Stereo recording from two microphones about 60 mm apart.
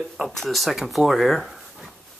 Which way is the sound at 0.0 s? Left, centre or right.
Centre.